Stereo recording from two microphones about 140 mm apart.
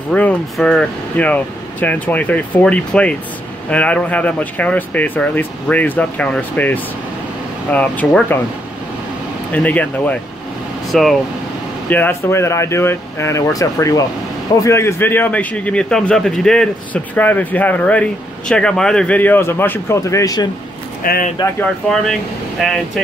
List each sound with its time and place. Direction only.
0.1 s a man's voice: 10° left (ahead or behind)
9.5 s a man's voice: 10° left (ahead or behind)
11.9 s a man's voice: 15° left (ahead or behind)
21.0 s speech: 90° left
21.8 s speech: 5° left (ahead or behind)